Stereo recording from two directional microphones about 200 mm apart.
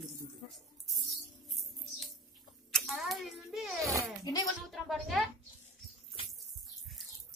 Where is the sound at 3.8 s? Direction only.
15° right (ahead or behind).